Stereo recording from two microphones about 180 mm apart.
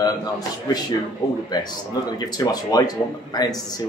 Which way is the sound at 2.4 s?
20° left (ahead or behind).